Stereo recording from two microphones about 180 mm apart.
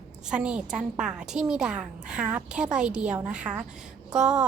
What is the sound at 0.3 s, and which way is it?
A woman's voice, 5° right (ahead or behind).